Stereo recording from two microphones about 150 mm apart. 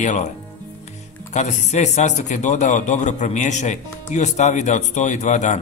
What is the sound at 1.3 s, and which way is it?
Speech, 50° left (ahead or behind).